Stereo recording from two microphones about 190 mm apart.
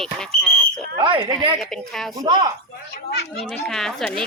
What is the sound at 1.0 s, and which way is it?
Speech, 25° right (ahead or behind).